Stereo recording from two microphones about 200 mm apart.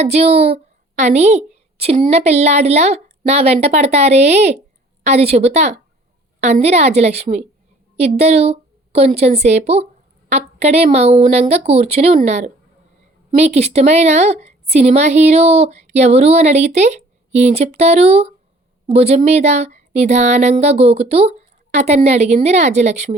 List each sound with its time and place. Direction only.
0.0 s a woman's voice: 30° right (ahead or behind)